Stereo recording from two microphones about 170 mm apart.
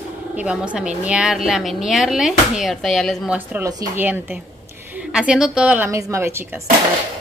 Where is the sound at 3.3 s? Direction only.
10° right (ahead or behind).